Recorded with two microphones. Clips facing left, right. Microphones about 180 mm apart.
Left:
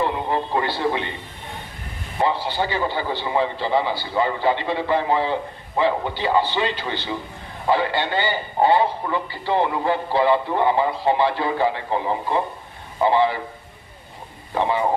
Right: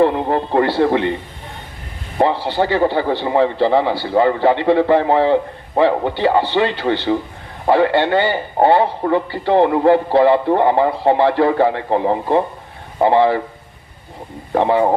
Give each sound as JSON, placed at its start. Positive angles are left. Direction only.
{"t": 0.0, "sound": "speech", "side_deg": -55}
{"t": 2.1, "sound": "a man's voice", "side_deg": -65}
{"t": 14.5, "sound": "a man's voice", "side_deg": -55}